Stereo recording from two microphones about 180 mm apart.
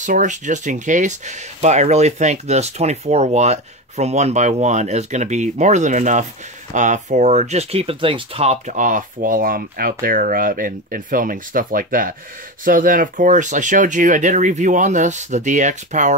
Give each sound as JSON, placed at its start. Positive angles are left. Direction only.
{"t": 0.0, "sound": "speech", "side_deg": -45}